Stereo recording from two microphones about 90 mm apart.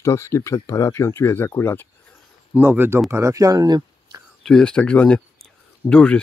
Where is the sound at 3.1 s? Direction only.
35° right (ahead or behind).